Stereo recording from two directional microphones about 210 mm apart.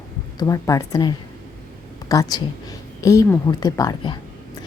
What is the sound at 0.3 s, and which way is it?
A woman's voice, 15° left (ahead or behind).